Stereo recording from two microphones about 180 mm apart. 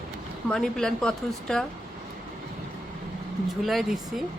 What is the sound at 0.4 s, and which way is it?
Speech, 5° left (ahead or behind).